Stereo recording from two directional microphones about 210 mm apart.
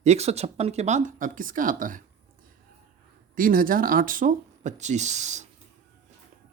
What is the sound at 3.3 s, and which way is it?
Speech, 40° right (ahead or behind).